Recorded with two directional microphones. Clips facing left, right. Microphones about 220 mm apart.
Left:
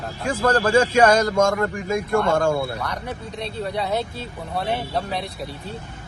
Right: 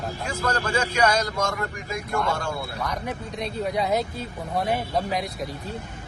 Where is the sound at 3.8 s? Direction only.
10° right (ahead or behind).